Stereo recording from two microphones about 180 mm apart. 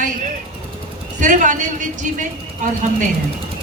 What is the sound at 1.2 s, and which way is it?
Speech, 45° right (ahead or behind).